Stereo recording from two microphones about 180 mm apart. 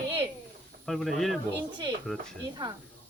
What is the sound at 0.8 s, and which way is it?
Speech, centre (ahead or behind).